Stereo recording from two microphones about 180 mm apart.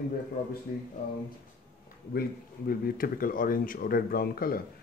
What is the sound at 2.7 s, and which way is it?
Speech, 50° left (ahead or behind).